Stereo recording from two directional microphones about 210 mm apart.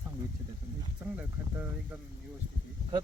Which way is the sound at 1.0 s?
15° right (ahead or behind).